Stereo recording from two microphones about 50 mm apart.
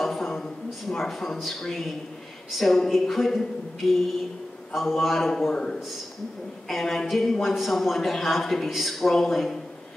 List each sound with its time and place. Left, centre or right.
0.0 s a sound: centre
2.5 s speech: centre
4.7 s speech: centre
5.5 s a man's voice: centre
6.7 s speech: centre